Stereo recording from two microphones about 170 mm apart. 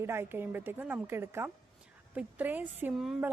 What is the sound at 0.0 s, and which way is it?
A woman's voice, 15° right (ahead or behind).